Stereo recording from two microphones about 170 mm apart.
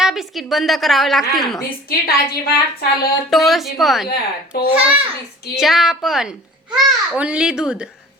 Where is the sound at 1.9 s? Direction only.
60° left (ahead or behind).